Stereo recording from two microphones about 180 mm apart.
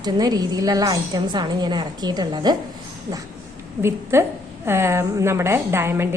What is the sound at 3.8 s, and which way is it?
A woman's voice, 15° right (ahead or behind).